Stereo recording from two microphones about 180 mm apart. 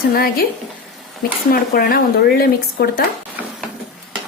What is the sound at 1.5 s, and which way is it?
Speech, 55° left (ahead or behind).